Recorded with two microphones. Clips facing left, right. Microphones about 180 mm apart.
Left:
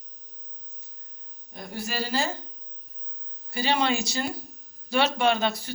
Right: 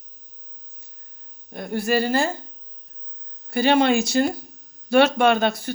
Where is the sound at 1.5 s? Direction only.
55° right (ahead or behind).